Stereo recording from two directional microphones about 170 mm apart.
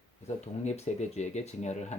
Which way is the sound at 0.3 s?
40° left (ahead or behind).